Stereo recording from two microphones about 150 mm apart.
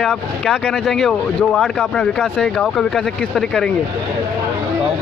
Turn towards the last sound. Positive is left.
turn(degrees=5)  # may be behind; listen again after turning